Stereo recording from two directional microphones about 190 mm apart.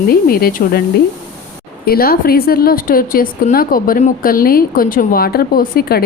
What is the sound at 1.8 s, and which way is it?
A woman's voice, 50° left (ahead or behind).